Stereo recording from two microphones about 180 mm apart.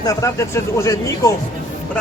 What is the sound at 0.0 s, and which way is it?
Speech, 20° left (ahead or behind).